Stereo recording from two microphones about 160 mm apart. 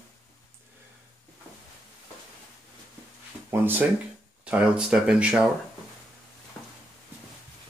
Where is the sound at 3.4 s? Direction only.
15° right (ahead or behind).